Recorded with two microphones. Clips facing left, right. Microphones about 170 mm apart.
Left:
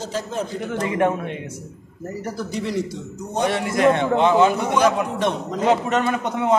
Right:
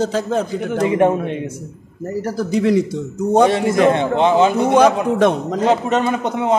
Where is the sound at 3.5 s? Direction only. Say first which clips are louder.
Right 4 dB; 25° right (ahead or behind).